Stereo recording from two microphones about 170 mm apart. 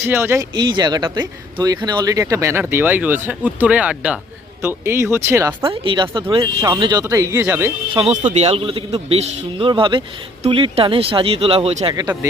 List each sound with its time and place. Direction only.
0.0 s speech: 15° right (ahead or behind)
0.5 s speech: 25° right (ahead or behind)
5.6 s speech: 30° right (ahead or behind); by 7.7 s 10° right (ahead or behind)
7.9 s a man's voice: 35° right (ahead or behind)
11.9 s speech: 25° right (ahead or behind)